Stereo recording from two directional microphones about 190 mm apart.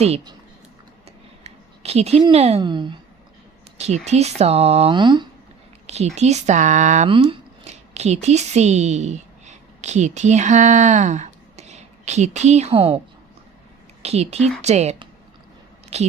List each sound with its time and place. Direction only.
0.0 s speech: 35° right (ahead or behind)
1.5 s speech: 35° right (ahead or behind)
3.8 s speech: 35° right (ahead or behind)
6.1 s speech: 35° right (ahead or behind)
7.1 s speech: 25° right (ahead or behind)
14.0 s speech: 35° right (ahead or behind)